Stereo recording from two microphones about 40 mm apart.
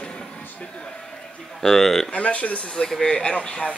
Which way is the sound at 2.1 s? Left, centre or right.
Left.